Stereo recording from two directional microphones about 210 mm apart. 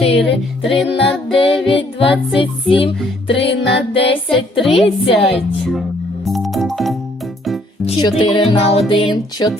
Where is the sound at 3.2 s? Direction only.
55° left (ahead or behind).